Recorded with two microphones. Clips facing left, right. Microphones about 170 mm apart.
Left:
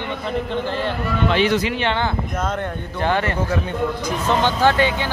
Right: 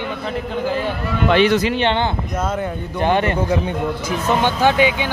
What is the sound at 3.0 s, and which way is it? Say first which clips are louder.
Speech: right 3 dB; 20° right (ahead or behind).